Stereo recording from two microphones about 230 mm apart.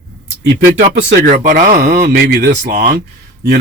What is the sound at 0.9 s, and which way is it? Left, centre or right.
Speech, right.